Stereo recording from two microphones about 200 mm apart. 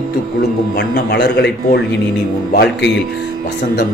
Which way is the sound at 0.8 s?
55° left (ahead or behind).